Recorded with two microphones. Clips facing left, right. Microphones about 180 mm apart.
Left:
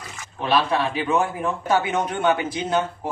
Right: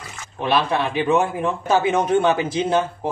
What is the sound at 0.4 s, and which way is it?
A man's voice, 20° right (ahead or behind).